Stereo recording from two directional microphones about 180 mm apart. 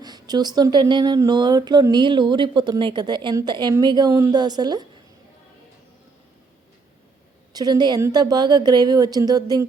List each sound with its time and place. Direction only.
0.0 s speech: 25° right (ahead or behind)
7.5 s speech: 25° right (ahead or behind)